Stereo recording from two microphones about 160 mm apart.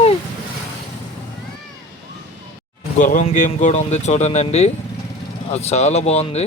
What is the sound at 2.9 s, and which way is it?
Speech, 55° left (ahead or behind).